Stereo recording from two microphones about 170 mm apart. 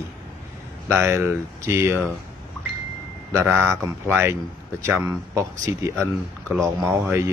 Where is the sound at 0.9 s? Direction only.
15° right (ahead or behind).